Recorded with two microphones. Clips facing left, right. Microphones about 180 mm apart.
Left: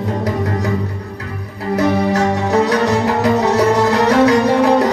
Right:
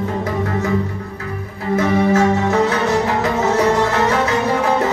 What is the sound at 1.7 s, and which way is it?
Music, 35° left (ahead or behind).